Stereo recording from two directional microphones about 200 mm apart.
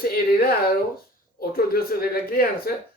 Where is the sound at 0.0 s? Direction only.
50° left (ahead or behind).